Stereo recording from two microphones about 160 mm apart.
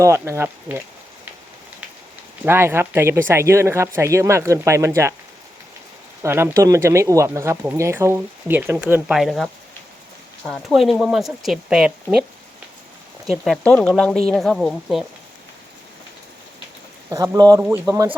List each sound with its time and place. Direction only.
0.0 s speech: 15° right (ahead or behind)
2.4 s speech: 15° right (ahead or behind)
6.2 s speech: 15° right (ahead or behind)
13.2 s speech: centre (ahead or behind)
17.1 s speech: 20° right (ahead or behind)